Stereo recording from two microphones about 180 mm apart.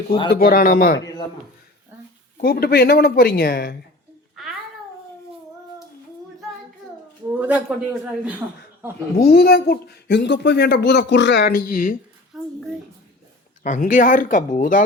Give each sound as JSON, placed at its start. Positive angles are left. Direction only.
{"t": 0.3, "sound": "speech", "side_deg": 55}
{"t": 2.4, "sound": "speech", "side_deg": 55}
{"t": 4.4, "sound": "babbling", "side_deg": 0}
{"t": 7.3, "sound": "a man's voice", "side_deg": -10}
{"t": 9.2, "sound": "speech", "side_deg": 60}
{"t": 12.3, "sound": "a sound", "side_deg": 0}
{"t": 13.6, "sound": "speech", "side_deg": 45}